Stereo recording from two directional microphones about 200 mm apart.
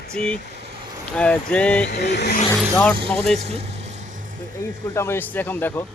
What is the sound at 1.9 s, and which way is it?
Speech, 55° left (ahead or behind).